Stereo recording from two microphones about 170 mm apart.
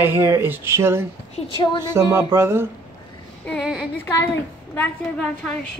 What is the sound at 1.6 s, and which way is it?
Speech, 25° left (ahead or behind).